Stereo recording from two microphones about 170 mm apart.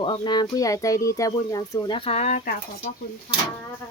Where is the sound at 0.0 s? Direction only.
25° left (ahead or behind); by 2.6 s 50° left (ahead or behind).